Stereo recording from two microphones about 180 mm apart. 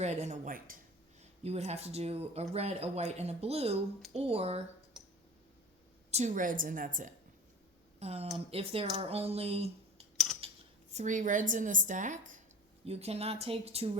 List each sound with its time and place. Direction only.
0.0 s speech: 40° right (ahead or behind)
1.2 s speech: 35° right (ahead or behind)
6.1 s a woman's voice: 40° right (ahead or behind)
7.9 s speech: 35° right (ahead or behind)
10.4 s cutlery: 30° right (ahead or behind)
10.9 s a woman's voice: 45° right (ahead or behind)